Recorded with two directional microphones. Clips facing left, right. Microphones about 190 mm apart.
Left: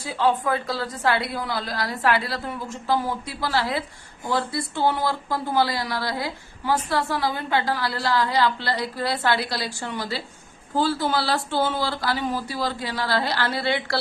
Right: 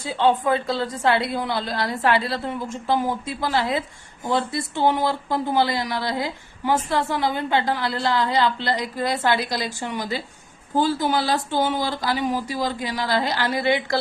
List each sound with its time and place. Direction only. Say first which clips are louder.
0.0 s a woman's voice: right 2 dB; 25° right (ahead or behind)